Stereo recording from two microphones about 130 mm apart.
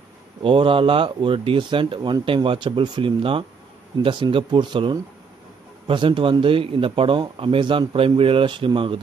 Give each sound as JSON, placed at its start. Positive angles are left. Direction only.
{"t": 0.4, "sound": "speech", "side_deg": -45}